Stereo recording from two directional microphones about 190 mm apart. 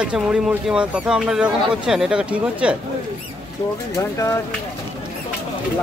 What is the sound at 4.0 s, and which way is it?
Speech, 15° left (ahead or behind).